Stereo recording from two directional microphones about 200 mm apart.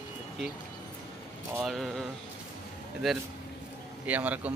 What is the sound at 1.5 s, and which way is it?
Speech, centre (ahead or behind).